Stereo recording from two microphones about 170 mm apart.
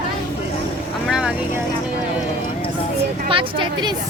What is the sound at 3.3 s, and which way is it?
Speech, 30° right (ahead or behind).